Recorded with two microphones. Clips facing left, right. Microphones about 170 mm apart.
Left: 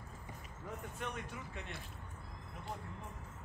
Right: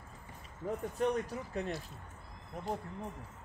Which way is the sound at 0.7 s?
35° right (ahead or behind).